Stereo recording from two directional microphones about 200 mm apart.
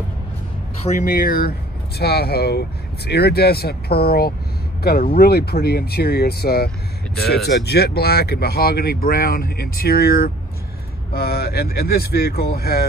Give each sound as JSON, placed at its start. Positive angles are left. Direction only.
{"t": 0.9, "sound": "speech", "side_deg": 45}